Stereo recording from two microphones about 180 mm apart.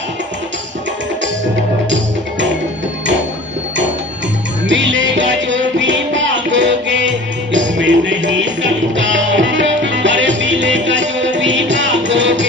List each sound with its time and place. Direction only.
4.6 s music: 90° right